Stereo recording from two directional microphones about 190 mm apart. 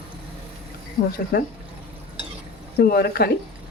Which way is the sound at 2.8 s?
55° left (ahead or behind).